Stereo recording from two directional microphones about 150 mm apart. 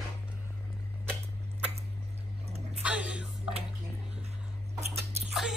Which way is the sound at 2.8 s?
10° right (ahead or behind).